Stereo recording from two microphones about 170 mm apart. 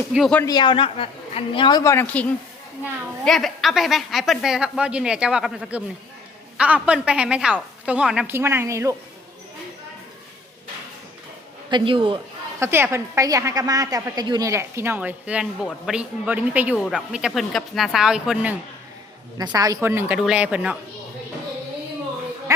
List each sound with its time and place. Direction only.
0.1 s a woman's voice: centre (ahead or behind)
0.3 s a man's voice: 20° left (ahead or behind)
1.8 s speech: 15° left (ahead or behind)
3.2 s a woman's voice: centre (ahead or behind); by 9.0 s 20° right (ahead or behind)
11.7 s speech: 30° right (ahead or behind)
12.5 s a woman's voice: 15° right (ahead or behind)
19.5 s a woman's voice: 20° right (ahead or behind)